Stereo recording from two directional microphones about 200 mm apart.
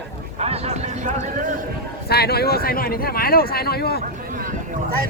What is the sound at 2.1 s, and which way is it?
Speech, 50° left (ahead or behind).